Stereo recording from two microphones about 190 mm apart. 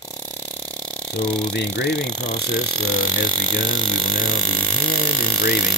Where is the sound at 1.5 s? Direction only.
65° left (ahead or behind).